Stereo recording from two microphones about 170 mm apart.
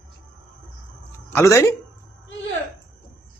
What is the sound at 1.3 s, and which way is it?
Speech, 15° left (ahead or behind).